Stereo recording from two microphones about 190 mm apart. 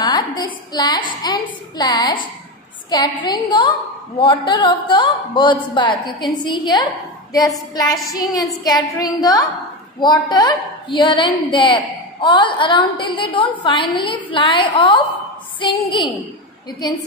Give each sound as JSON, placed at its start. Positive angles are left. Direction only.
{"t": 0.0, "sound": "a woman's voice", "side_deg": 20}